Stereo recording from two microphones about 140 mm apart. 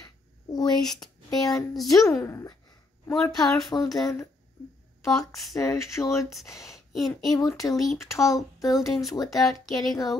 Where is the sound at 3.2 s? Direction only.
20° left (ahead or behind).